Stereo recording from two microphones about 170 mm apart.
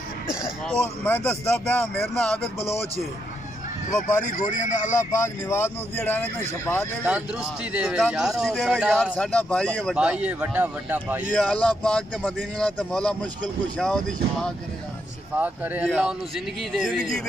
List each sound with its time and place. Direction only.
1.0 s speech: 10° left (ahead or behind)
3.9 s speech: 50° left (ahead or behind)
4.9 s speech: 15° left (ahead or behind)
7.7 s a man's voice: 5° right (ahead or behind)
9.1 s speech: 5° left (ahead or behind)
9.9 s speech: 5° right (ahead or behind)
11.3 s a man's voice: 5° left (ahead or behind)
15.3 s speech: 10° right (ahead or behind)